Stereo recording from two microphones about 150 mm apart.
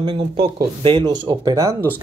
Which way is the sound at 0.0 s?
35° right (ahead or behind).